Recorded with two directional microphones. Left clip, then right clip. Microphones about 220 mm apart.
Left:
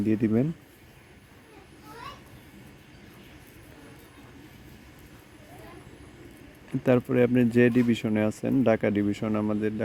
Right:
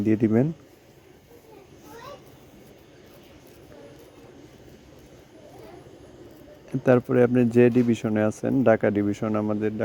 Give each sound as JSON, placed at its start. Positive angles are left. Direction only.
{"t": 0.0, "sound": "speech", "side_deg": -10}
{"t": 6.8, "sound": "speech", "side_deg": -5}